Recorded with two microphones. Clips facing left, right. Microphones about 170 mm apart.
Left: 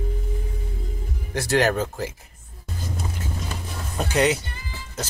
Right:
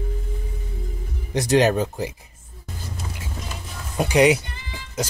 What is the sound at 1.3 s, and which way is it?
Speech, 20° right (ahead or behind).